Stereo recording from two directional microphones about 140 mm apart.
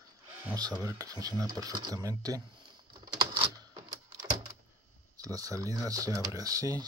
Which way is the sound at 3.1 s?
30° right (ahead or behind).